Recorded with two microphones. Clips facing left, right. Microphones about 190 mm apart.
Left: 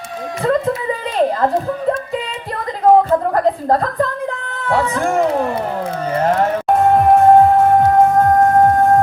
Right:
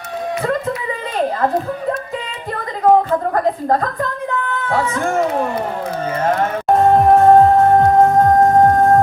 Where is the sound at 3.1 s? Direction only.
35° left (ahead or behind).